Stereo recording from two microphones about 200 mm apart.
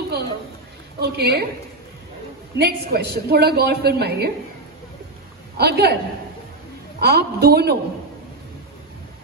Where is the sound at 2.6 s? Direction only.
55° right (ahead or behind).